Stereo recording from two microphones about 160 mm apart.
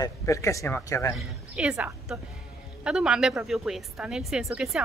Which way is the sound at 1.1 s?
5° right (ahead or behind).